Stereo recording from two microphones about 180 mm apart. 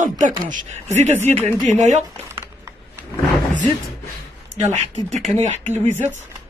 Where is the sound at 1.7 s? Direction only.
40° right (ahead or behind).